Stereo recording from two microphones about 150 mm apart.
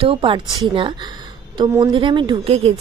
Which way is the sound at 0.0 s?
35° right (ahead or behind).